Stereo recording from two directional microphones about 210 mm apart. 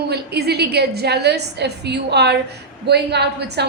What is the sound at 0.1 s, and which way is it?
A woman's voice, 50° right (ahead or behind).